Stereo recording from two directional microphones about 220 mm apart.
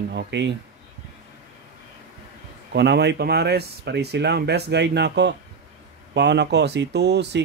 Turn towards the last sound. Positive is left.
turn(degrees=-50)  # may be behind; listen again after turning